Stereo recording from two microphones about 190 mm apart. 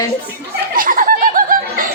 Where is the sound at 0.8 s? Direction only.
45° right (ahead or behind).